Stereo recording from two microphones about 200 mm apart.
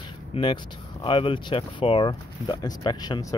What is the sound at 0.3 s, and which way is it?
Speech, 25° left (ahead or behind).